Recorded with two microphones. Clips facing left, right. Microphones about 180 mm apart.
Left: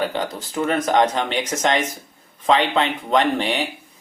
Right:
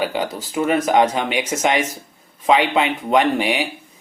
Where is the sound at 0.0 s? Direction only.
10° right (ahead or behind).